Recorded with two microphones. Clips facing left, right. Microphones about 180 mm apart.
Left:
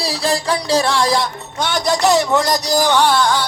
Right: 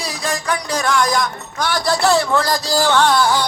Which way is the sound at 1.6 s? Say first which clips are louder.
Left 1 dB; 20° left (ahead or behind).